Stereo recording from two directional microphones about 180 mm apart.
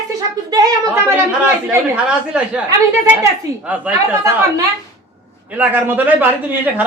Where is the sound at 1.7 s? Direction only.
5° right (ahead or behind).